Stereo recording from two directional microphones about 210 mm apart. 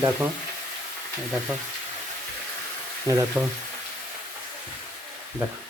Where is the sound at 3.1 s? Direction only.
15° right (ahead or behind).